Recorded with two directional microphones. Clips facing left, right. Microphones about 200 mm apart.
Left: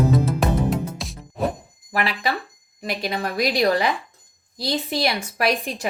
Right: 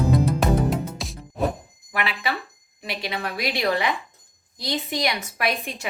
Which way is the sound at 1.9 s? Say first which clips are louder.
Left 3 dB; 40° left (ahead or behind).